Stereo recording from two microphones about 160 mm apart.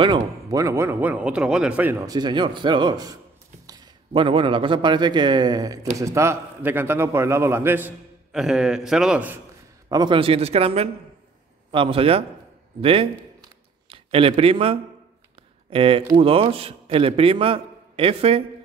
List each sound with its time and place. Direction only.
0.0 s a man's voice: 25° right (ahead or behind)
2.0 s a man's voice: 25° right (ahead or behind); by 9.4 s 10° right (ahead or behind)
9.8 s a man's voice: 25° right (ahead or behind)